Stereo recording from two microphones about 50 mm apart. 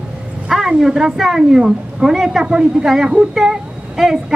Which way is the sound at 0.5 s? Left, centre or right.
Centre.